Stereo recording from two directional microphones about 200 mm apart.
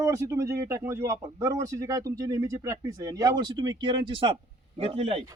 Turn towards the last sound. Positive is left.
turn(degrees=-30)  # may be behind; listen again after turning